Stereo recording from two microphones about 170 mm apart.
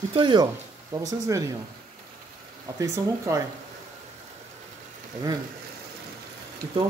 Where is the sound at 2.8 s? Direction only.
20° right (ahead or behind).